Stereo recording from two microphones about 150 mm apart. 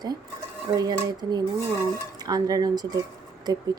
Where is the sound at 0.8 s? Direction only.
25° right (ahead or behind).